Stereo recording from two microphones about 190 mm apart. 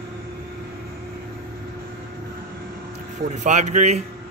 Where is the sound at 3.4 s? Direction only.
40° right (ahead or behind).